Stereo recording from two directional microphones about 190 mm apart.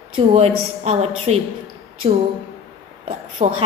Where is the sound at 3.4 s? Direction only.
30° right (ahead or behind).